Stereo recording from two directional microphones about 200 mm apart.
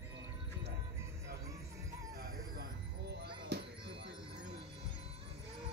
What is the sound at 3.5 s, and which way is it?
Music, 55° right (ahead or behind).